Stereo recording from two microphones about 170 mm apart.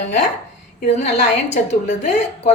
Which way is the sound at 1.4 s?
40° left (ahead or behind).